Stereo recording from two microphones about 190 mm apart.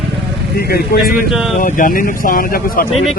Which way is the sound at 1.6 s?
45° left (ahead or behind).